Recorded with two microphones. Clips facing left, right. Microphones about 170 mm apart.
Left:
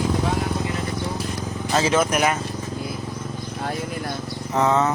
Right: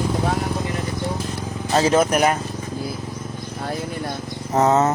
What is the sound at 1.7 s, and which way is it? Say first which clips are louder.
Speech: right 3 dB; 35° right (ahead or behind).